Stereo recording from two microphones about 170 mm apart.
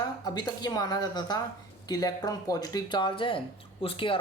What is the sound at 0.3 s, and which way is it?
Speech, 25° left (ahead or behind).